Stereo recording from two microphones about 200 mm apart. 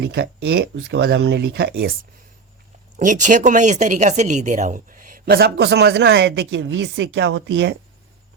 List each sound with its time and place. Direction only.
0.0 s speech: 55° right (ahead or behind)
3.0 s speech: 40° right (ahead or behind); by 7.8 s 60° right (ahead or behind)